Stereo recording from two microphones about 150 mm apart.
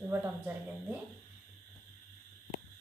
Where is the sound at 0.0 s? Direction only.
15° right (ahead or behind).